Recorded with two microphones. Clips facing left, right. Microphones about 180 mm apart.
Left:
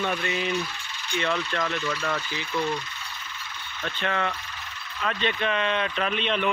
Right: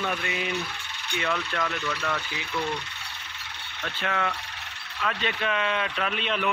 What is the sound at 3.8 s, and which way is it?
Speech, 5° right (ahead or behind).